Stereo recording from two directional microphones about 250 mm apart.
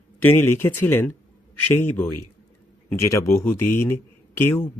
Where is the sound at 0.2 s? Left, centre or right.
Centre.